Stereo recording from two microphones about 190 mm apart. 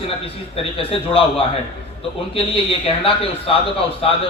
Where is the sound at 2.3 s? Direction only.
30° left (ahead or behind).